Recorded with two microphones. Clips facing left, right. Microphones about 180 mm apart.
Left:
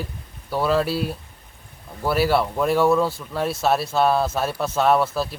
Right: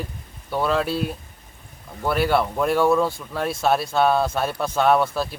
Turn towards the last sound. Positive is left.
turn(degrees=0)  # may be behind; listen again after turning